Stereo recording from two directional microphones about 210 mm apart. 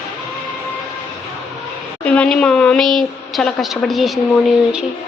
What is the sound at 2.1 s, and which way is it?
A woman's voice, 5° left (ahead or behind).